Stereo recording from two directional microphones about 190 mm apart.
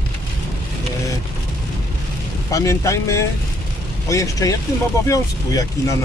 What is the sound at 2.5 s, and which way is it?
Speech, 15° left (ahead or behind).